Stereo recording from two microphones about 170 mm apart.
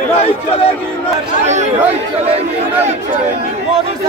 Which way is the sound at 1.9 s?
35° right (ahead or behind).